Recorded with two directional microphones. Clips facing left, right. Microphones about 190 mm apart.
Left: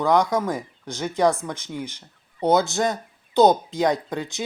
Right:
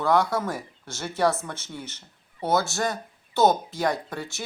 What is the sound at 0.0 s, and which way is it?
Speech, 15° left (ahead or behind).